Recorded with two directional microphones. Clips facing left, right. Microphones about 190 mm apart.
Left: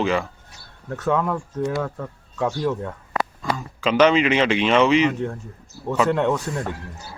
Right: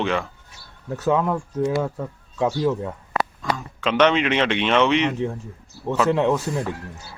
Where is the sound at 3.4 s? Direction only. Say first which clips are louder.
Left 1 dB; 5° left (ahead or behind).